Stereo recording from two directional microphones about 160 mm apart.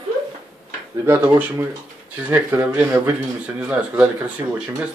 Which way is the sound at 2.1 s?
10° right (ahead or behind).